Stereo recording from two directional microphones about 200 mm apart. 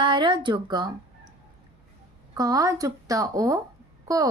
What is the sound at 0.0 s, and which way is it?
Speech, 25° right (ahead or behind).